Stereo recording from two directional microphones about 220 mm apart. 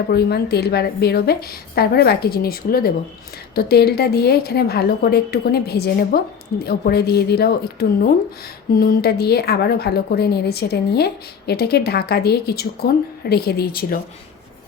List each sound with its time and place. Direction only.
0.1 s speech: 45° left (ahead or behind)